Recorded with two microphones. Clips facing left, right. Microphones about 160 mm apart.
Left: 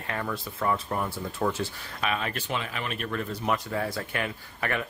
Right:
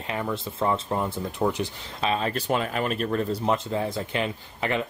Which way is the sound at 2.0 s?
35° right (ahead or behind).